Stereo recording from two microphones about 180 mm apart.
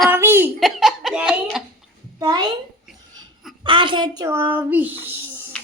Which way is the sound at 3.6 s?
25° right (ahead or behind).